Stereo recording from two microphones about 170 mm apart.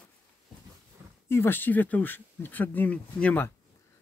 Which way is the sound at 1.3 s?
15° left (ahead or behind).